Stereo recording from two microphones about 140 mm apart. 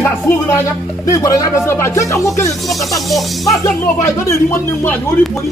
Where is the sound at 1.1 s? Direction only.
25° left (ahead or behind).